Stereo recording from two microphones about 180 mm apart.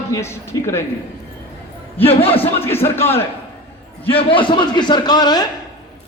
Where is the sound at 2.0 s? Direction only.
30° left (ahead or behind).